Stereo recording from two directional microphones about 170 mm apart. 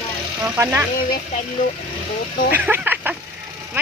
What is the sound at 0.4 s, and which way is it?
Speech, 15° right (ahead or behind).